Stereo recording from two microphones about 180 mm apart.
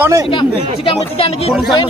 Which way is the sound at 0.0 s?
20° right (ahead or behind).